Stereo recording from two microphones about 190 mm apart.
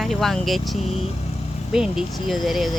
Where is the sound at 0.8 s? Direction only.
35° left (ahead or behind).